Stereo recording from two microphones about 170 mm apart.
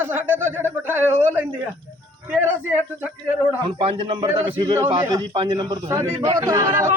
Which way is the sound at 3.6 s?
30° right (ahead or behind).